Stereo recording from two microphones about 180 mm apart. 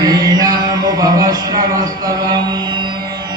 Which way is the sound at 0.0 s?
20° right (ahead or behind).